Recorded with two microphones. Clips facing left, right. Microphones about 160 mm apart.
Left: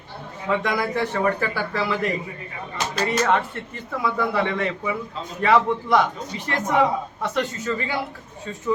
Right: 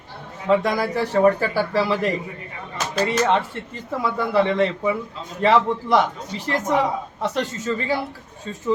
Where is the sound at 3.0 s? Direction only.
25° right (ahead or behind).